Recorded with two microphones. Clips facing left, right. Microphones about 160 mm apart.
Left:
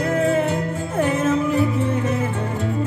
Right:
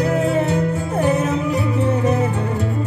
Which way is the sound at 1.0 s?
40° right (ahead or behind).